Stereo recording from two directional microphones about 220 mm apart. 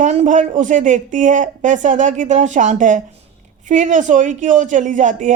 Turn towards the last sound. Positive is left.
turn(degrees=-35)  # may be behind; listen again after turning